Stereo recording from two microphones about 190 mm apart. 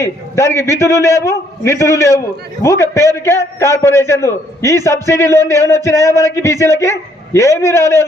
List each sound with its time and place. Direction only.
0.0 s a man's voice: 15° left (ahead or behind)